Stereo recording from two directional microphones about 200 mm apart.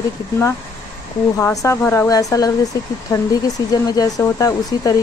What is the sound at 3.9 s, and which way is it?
Speech, 15° left (ahead or behind).